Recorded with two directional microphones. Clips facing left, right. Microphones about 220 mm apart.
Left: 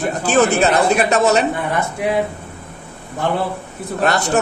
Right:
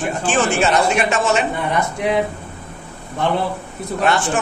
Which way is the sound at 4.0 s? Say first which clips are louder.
Left 1 dB; 40° left (ahead or behind).